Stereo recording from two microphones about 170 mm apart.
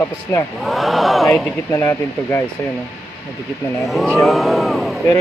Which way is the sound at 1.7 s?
15° left (ahead or behind).